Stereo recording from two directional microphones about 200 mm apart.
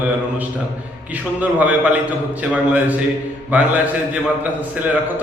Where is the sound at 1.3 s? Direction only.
10° right (ahead or behind).